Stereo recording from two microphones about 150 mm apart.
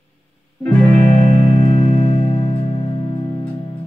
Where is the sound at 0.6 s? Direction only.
15° left (ahead or behind).